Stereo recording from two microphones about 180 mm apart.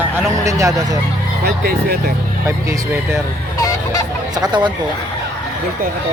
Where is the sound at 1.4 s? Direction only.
60° right (ahead or behind).